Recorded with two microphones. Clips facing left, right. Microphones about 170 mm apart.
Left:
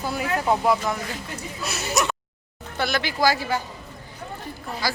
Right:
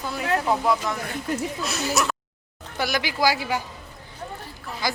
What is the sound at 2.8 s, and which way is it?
Speech, 10° right (ahead or behind).